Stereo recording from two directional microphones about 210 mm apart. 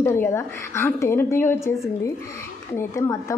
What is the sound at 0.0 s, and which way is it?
A woman's voice, 10° left (ahead or behind).